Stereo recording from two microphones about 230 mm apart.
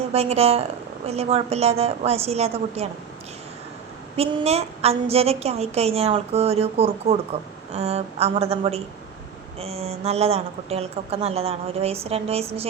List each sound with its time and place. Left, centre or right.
0.1 s a woman's voice: right
4.2 s a woman's voice: right